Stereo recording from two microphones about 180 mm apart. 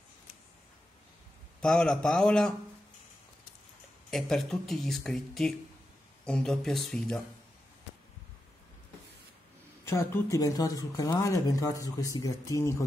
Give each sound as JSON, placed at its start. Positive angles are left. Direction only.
{"t": 1.6, "sound": "speech", "side_deg": 5}
{"t": 4.1, "sound": "speech", "side_deg": 0}
{"t": 9.8, "sound": "speech", "side_deg": 15}